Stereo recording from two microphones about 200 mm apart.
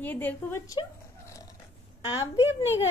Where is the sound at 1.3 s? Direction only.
15° left (ahead or behind).